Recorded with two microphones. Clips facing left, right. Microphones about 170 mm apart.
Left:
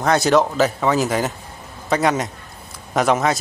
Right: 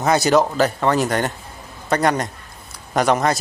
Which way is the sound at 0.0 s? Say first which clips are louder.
Even; centre (ahead or behind).